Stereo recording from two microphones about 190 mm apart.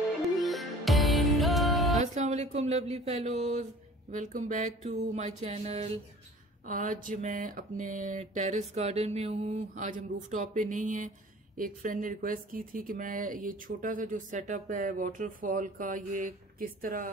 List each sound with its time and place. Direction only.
0.4 s music: centre (ahead or behind)
2.0 s speech: 35° right (ahead or behind)
4.1 s a sound: 40° right (ahead or behind)
11.5 s speech: 45° right (ahead or behind)